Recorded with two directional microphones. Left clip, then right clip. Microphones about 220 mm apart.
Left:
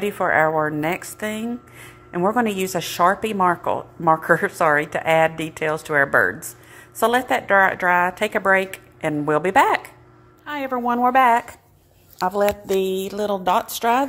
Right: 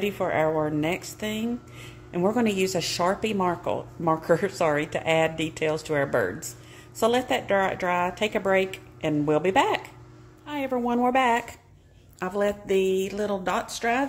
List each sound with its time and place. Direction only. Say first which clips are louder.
0.0 s a woman's voice: left 6 dB; 10° left (ahead or behind)
12.4 s speech: left 3 dB; 20° left (ahead or behind)